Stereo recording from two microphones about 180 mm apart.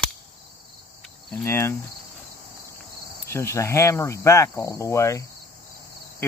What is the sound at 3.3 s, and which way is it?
Speech, 15° left (ahead or behind).